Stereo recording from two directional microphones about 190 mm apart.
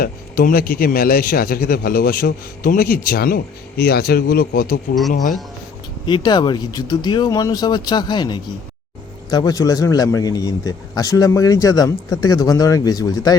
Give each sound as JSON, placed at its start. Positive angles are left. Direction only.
{"t": 0.0, "sound": "a man's voice", "side_deg": 50}
{"t": 6.1, "sound": "a man's voice", "side_deg": 25}